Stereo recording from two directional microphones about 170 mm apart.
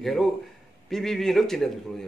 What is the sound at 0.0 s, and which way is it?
A man's voice, centre (ahead or behind).